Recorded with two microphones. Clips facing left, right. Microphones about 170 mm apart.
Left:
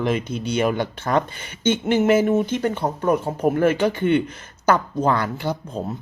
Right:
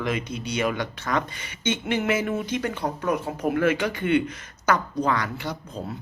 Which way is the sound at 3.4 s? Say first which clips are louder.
Left 4 dB; 45° left (ahead or behind).